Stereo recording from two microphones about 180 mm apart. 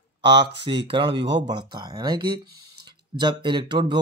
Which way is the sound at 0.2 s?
25° right (ahead or behind).